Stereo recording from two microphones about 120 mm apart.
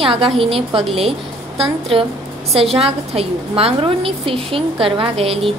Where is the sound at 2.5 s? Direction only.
55° right (ahead or behind).